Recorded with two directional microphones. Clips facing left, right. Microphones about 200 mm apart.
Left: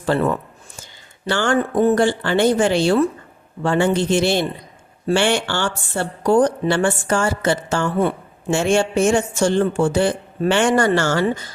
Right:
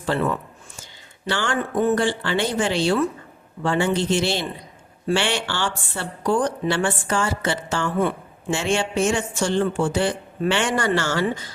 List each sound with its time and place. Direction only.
0.0 s speech: 40° left (ahead or behind)
1.3 s speech: 45° left (ahead or behind)